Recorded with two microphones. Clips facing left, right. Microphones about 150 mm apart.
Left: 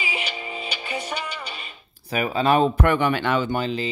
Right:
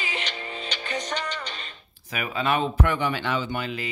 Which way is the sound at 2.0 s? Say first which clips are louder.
Left 6 dB; 35° left (ahead or behind).